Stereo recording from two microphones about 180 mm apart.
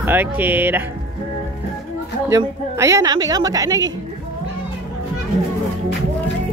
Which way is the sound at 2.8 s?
15° right (ahead or behind).